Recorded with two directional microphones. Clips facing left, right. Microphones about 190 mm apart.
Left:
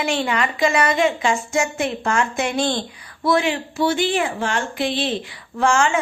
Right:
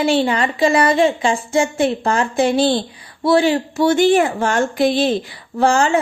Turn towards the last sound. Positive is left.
turn(degrees=-35)  # may be behind; listen again after turning